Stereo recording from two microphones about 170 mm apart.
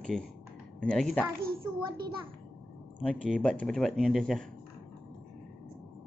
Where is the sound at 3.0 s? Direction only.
5° left (ahead or behind).